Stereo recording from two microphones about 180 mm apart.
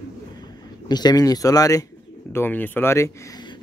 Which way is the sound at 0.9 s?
20° left (ahead or behind).